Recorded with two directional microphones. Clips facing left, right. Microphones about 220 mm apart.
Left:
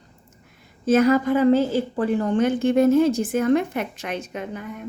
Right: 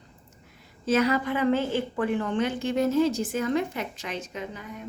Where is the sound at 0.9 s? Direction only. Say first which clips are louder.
Left 6 dB; 50° left (ahead or behind).